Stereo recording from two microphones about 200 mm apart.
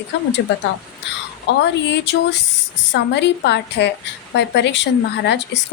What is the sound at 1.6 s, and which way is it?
Speech, 60° left (ahead or behind).